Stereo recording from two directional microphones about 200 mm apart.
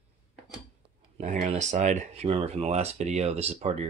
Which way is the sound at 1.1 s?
40° right (ahead or behind).